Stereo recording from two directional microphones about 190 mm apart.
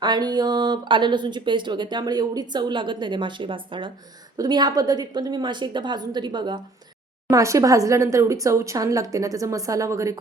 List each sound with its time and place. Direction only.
0.0 s a woman's voice: 20° right (ahead or behind)